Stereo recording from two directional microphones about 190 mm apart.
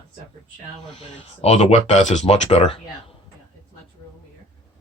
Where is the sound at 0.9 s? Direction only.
35° left (ahead or behind).